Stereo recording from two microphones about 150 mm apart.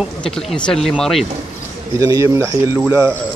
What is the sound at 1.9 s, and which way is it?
Speech, 25° right (ahead or behind).